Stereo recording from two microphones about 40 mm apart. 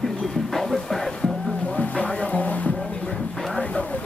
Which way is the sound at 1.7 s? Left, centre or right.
Left.